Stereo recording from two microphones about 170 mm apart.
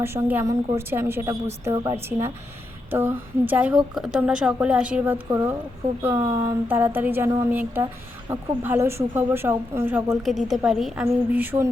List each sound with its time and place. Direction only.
0.0 s speech: 10° right (ahead or behind)
10.2 s speech: centre (ahead or behind)